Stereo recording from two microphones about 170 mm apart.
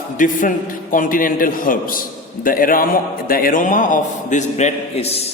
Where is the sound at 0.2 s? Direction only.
50° left (ahead or behind).